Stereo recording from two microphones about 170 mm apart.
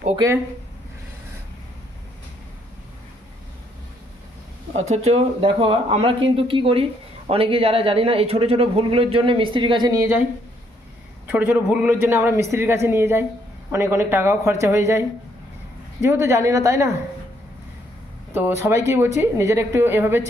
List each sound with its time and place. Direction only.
0.1 s speech: 20° right (ahead or behind)
4.8 s speech: 40° right (ahead or behind); by 10.2 s 15° right (ahead or behind)
11.2 s a man's voice: 10° right (ahead or behind)
18.3 s a man's voice: 15° right (ahead or behind)